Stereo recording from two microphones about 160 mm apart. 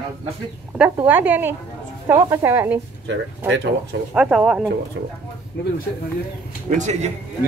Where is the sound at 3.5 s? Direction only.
90° right.